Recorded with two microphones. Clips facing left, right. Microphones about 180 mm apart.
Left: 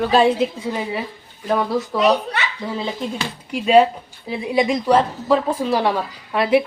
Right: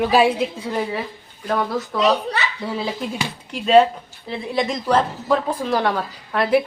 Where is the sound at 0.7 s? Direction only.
5° left (ahead or behind).